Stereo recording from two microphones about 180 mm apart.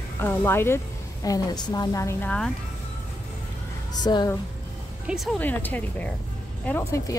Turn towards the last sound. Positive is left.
turn(degrees=15)  # may be behind; listen again after turning